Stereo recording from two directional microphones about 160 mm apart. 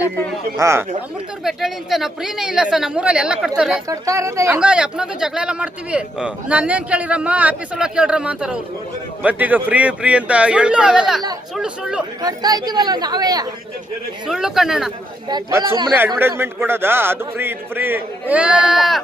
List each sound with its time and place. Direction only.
0.5 s a man's voice: 20° right (ahead or behind)
1.5 s a woman's voice: centre (ahead or behind)
3.8 s speech: 20° right (ahead or behind)
4.6 s a man's voice: 5° right (ahead or behind)
12.2 s speech: 25° right (ahead or behind)
14.3 s a woman's voice: 5° right (ahead or behind)
15.3 s speech: 25° right (ahead or behind)
16.1 s a man's voice: 15° right (ahead or behind)